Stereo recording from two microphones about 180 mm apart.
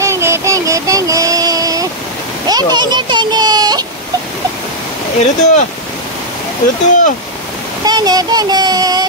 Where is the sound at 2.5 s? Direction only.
20° right (ahead or behind).